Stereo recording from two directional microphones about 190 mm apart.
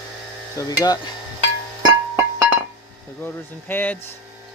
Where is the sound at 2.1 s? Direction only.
15° right (ahead or behind).